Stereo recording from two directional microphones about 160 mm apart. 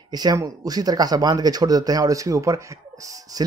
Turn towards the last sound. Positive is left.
turn(degrees=-20)  # may be behind; listen again after turning